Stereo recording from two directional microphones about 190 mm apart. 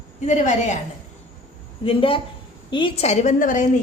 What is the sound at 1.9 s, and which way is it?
A woman's voice, 30° left (ahead or behind).